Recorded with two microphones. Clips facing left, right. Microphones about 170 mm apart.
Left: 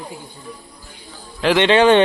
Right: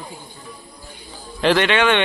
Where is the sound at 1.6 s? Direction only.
35° left (ahead or behind).